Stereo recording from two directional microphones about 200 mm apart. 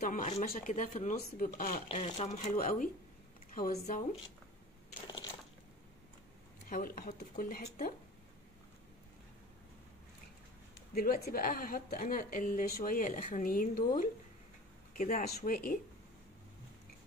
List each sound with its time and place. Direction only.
0.0 s speech: 40° left (ahead or behind)
1.9 s speech: 30° left (ahead or behind)
6.7 s a woman's voice: 45° left (ahead or behind)
11.0 s a woman's voice: 50° left (ahead or behind)
15.0 s a woman's voice: 40° left (ahead or behind)